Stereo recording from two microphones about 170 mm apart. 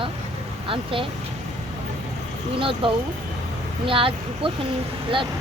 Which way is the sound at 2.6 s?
30° right (ahead or behind).